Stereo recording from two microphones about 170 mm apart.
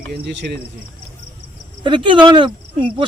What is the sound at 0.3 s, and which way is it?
Speech, 90° right.